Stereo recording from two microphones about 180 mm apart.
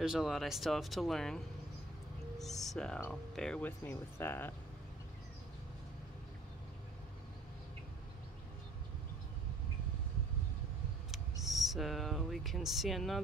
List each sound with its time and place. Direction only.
0.0 s speech: centre (ahead or behind)
11.1 s speech: centre (ahead or behind)